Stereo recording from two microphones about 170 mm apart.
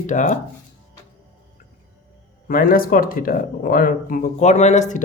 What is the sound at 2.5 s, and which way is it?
Speech, 55° left (ahead or behind).